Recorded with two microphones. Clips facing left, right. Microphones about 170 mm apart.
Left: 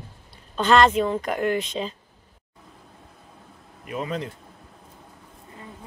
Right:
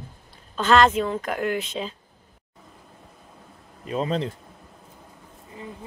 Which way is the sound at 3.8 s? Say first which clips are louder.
Right 4 dB; 30° right (ahead or behind).